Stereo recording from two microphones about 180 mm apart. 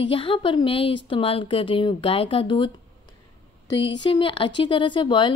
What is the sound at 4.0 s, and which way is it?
A woman's voice, 30° left (ahead or behind).